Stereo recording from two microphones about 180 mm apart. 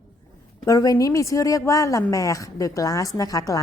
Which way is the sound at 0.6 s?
20° left (ahead or behind).